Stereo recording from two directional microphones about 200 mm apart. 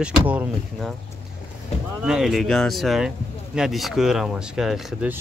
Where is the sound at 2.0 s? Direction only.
5° right (ahead or behind).